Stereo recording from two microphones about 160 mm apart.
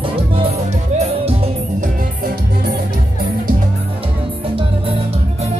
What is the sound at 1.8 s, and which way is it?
Music, 70° right (ahead or behind).